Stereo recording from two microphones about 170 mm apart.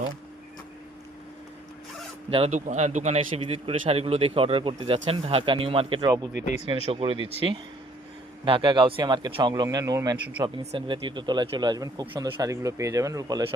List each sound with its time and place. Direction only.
2.3 s speech: 40° right (ahead or behind)
6.4 s speech: 45° left (ahead or behind)
6.8 s speech: 35° right (ahead or behind)
8.4 s speech: 30° right (ahead or behind)
10.6 s speech: 35° right (ahead or behind)